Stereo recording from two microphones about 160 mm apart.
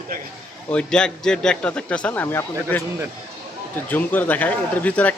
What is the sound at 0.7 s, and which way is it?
A man's voice, 5° left (ahead or behind).